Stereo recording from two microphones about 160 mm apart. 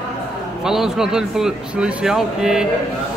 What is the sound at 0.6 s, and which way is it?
A man's voice, 5° right (ahead or behind).